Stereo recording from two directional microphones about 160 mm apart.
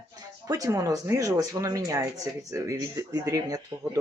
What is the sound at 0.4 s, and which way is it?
Speech, 20° right (ahead or behind).